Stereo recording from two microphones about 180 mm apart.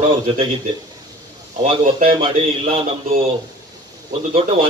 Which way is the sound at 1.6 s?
35° right (ahead or behind).